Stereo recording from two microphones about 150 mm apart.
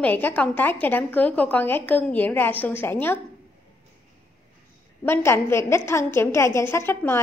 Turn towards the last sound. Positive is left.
turn(degrees=15)  # may be behind; listen again after turning